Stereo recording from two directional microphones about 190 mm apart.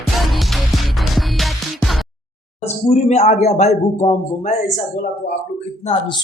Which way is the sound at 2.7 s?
35° left (ahead or behind).